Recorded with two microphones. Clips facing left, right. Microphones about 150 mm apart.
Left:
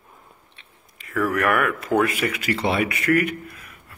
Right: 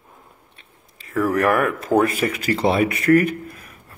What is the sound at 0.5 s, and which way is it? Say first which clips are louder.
Speech: right 1 dB; 35° right (ahead or behind).